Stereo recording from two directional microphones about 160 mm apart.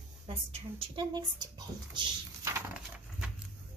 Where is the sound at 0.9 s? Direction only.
25° right (ahead or behind).